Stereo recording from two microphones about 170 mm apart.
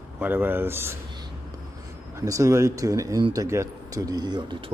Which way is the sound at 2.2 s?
20° right (ahead or behind).